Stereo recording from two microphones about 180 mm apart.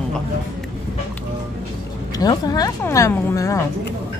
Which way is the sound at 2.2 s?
20° left (ahead or behind).